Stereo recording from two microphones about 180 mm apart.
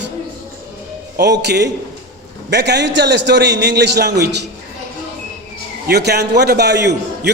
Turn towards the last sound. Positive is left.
turn(degrees=-70)  # may be behind; listen again after turning